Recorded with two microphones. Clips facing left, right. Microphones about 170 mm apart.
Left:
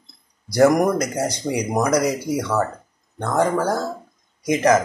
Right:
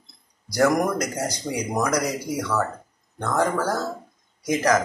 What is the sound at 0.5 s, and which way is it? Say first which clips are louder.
Speech: left 5 dB; 20° left (ahead or behind).